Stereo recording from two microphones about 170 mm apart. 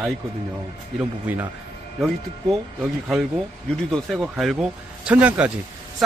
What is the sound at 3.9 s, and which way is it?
A man's voice, centre (ahead or behind).